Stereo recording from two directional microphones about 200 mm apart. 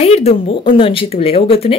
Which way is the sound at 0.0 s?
30° left (ahead or behind).